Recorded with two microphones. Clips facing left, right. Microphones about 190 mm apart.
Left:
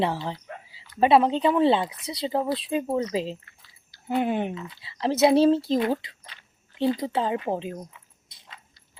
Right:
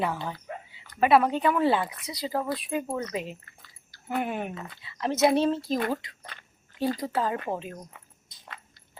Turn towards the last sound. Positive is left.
turn(degrees=25)  # may be behind; listen again after turning